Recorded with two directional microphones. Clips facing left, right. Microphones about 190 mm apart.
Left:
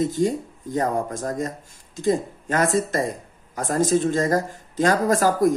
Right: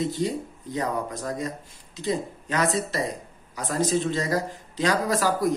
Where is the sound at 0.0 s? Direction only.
45° left (ahead or behind).